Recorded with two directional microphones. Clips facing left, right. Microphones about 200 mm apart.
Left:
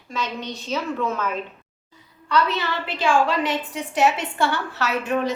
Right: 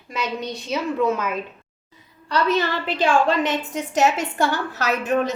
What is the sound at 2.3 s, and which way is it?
Speech, 40° right (ahead or behind).